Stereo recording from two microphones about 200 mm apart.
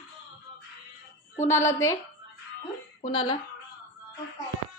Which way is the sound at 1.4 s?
15° left (ahead or behind).